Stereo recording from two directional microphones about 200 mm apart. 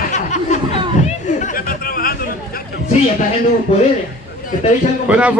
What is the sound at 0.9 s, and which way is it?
Chatter, 35° left (ahead or behind).